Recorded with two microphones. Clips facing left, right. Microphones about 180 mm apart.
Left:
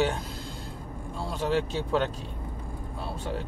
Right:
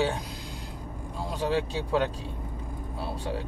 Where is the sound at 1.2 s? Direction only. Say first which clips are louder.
Even; 15° right (ahead or behind).